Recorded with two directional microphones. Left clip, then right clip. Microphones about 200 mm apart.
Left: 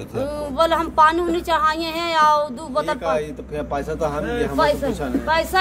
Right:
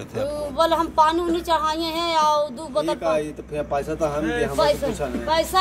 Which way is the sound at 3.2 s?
40° right (ahead or behind).